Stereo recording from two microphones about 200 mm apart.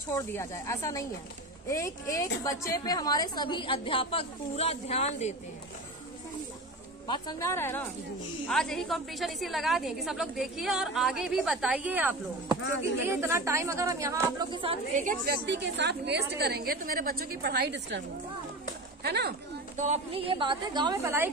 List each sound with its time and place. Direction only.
0.1 s a woman's voice: 15° left (ahead or behind); by 5.3 s 35° left (ahead or behind)
7.1 s a woman's voice: 20° left (ahead or behind); by 15.0 s 30° right (ahead or behind)
15.0 s a woman's voice: 50° right (ahead or behind)
19.0 s a woman's voice: 55° right (ahead or behind)
19.8 s a woman's voice: 30° right (ahead or behind); by 21.3 s 15° right (ahead or behind)